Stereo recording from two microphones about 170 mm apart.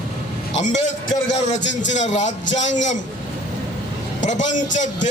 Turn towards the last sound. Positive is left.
turn(degrees=45)  # may be behind; listen again after turning